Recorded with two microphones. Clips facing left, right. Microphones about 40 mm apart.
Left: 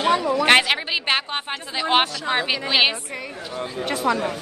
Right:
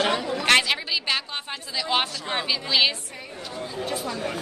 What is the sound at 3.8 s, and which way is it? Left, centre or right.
Speech, left.